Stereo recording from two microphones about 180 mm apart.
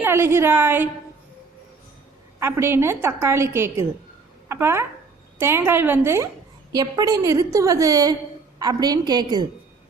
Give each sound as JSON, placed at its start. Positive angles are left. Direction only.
{"t": 0.0, "sound": "a woman's voice", "side_deg": -15}
{"t": 2.4, "sound": "a woman's voice", "side_deg": -15}